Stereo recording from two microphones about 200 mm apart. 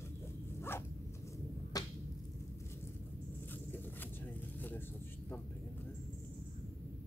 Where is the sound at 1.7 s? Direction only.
20° left (ahead or behind).